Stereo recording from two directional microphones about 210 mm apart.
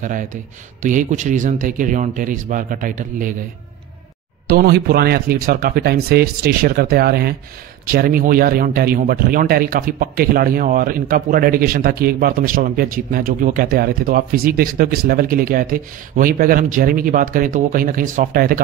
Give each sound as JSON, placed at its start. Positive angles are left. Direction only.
{"t": 0.0, "sound": "speech", "side_deg": -40}
{"t": 4.5, "sound": "speech", "side_deg": -45}